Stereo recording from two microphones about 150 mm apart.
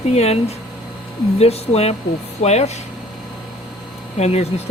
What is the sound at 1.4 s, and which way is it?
Speech, 45° left (ahead or behind).